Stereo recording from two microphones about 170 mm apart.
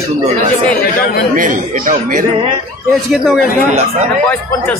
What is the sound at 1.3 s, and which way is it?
Speech, 50° right (ahead or behind).